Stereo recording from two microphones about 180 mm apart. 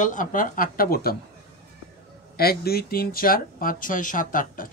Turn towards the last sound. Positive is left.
turn(degrees=50)  # may be behind; listen again after turning